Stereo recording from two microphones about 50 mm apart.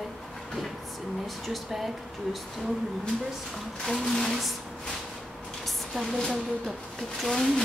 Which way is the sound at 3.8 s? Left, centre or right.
Centre.